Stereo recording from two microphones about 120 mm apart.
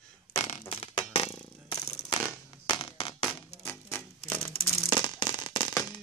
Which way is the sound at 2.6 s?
45° left (ahead or behind).